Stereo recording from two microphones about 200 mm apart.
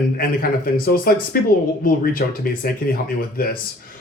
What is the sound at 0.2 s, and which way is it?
Speech, 45° left (ahead or behind).